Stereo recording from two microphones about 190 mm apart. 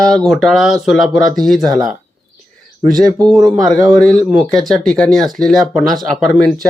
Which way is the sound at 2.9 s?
20° right (ahead or behind).